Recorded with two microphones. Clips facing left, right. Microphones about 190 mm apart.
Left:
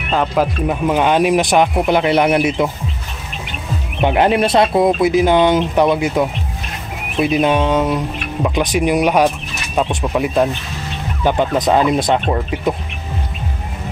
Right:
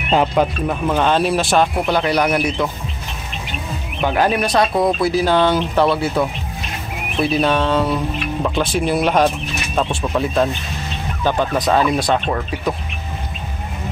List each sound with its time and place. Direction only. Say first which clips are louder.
0.3 s speech: left 1 dB; 10° left (ahead or behind); by 2.7 s 25° left (ahead or behind)
4.0 s speech: left 3 dB; 25° left (ahead or behind)